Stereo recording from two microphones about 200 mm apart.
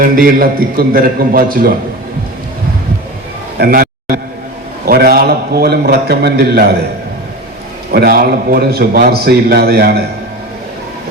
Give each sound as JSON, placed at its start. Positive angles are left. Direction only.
{"t": 0.0, "sound": "a man's voice", "side_deg": -45}
{"t": 3.6, "sound": "a man's voice", "side_deg": -45}
{"t": 4.9, "sound": "a man's voice", "side_deg": -50}
{"t": 7.9, "sound": "a man's voice", "side_deg": -50}